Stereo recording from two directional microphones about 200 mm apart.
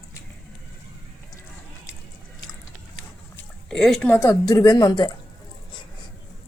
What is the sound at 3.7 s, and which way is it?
A woman's voice, centre (ahead or behind).